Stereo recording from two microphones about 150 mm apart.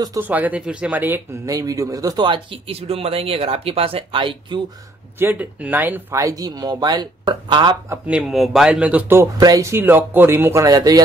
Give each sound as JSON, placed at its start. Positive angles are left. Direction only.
{"t": 0.2, "sound": "speech", "side_deg": -10}
{"t": 5.2, "sound": "speech", "side_deg": -10}
{"t": 8.1, "sound": "speech", "side_deg": -5}